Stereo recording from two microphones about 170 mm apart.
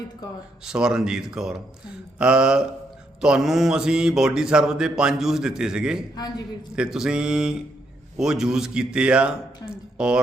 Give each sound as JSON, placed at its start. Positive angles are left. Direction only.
{"t": 0.6, "sound": "mantra", "side_deg": -5}
{"t": 6.1, "sound": "a man's voice", "side_deg": 25}
{"t": 6.7, "sound": "mantra", "side_deg": -5}